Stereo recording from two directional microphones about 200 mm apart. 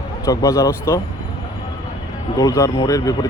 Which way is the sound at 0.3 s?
15° left (ahead or behind).